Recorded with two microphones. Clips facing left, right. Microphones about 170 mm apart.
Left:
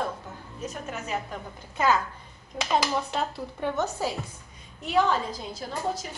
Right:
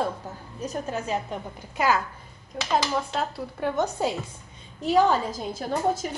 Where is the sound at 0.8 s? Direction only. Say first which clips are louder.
Right 3 dB; 30° right (ahead or behind).